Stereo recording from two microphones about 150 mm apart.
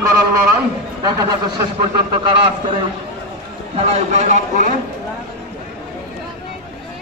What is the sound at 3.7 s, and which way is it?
Speech, 50° right (ahead or behind).